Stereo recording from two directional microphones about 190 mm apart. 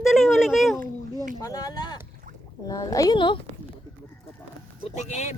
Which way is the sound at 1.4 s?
15° left (ahead or behind).